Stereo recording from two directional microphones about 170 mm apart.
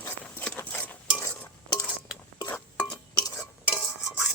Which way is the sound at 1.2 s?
20° left (ahead or behind).